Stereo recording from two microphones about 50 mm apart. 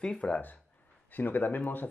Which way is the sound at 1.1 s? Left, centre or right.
Left.